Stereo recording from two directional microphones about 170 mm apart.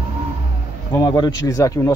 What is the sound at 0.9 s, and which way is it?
Speech, 20° left (ahead or behind).